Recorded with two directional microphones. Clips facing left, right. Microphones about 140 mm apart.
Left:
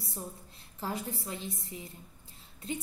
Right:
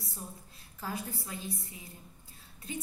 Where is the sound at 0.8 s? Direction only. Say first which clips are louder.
Left 2 dB; 25° left (ahead or behind).